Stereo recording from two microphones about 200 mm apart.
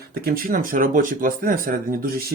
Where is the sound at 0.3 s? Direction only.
45° right (ahead or behind).